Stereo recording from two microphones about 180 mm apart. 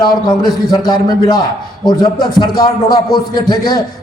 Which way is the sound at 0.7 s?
25° left (ahead or behind).